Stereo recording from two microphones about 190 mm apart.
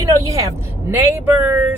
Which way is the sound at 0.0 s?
20° right (ahead or behind).